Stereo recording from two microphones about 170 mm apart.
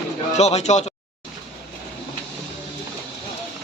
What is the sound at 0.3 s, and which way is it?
Speech, 40° left (ahead or behind).